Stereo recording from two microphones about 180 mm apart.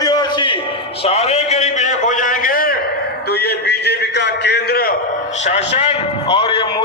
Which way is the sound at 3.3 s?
65° left (ahead or behind).